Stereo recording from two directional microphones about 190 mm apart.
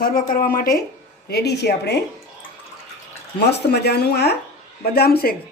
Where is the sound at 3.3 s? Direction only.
60° left (ahead or behind).